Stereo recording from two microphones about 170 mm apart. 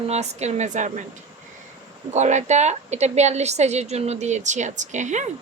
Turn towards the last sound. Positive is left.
turn(degrees=-45)  # may be behind; listen again after turning